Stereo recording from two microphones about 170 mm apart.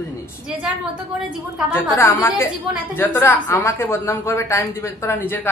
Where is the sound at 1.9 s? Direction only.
15° left (ahead or behind).